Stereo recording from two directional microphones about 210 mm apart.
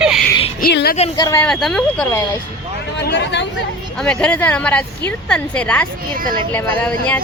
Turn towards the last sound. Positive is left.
turn(degrees=5)  # may be behind; listen again after turning